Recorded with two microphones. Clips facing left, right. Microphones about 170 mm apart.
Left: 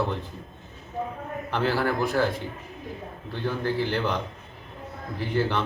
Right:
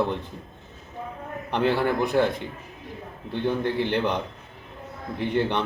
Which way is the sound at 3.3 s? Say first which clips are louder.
Right 3 dB; 25° right (ahead or behind).